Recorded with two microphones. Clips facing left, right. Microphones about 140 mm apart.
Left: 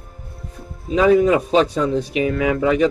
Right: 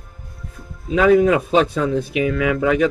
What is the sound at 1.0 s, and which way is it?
A man's voice, 25° left (ahead or behind).